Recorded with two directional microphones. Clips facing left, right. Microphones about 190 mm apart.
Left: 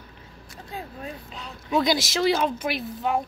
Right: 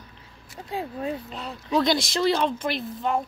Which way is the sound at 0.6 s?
30° right (ahead or behind).